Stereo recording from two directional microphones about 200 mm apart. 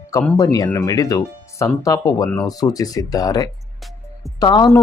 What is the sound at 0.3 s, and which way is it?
Speech, 20° left (ahead or behind).